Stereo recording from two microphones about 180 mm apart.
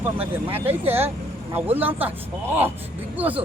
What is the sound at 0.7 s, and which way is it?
Speech, 10° right (ahead or behind).